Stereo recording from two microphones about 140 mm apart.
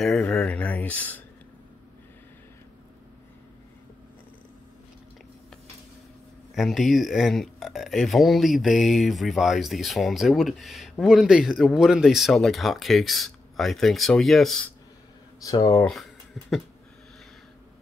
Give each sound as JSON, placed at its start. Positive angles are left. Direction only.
{"t": 0.0, "sound": "speech", "side_deg": 0}
{"t": 6.5, "sound": "speech", "side_deg": 0}
{"t": 15.4, "sound": "speech", "side_deg": 30}
{"t": 15.8, "sound": "speech", "side_deg": 0}